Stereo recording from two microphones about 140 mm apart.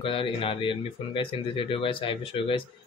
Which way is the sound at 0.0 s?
40° left (ahead or behind).